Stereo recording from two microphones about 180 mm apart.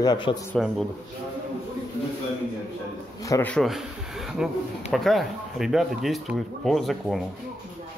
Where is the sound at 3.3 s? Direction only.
15° left (ahead or behind).